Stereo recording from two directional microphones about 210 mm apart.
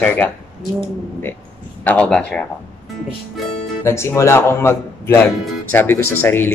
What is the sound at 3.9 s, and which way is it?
Speech, 10° left (ahead or behind).